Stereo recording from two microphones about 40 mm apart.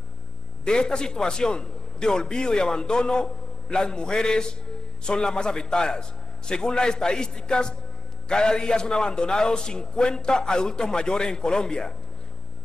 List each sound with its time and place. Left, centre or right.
0.7 s a man's voice: centre